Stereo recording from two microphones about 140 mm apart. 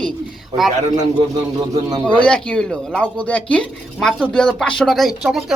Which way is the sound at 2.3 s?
10° left (ahead or behind).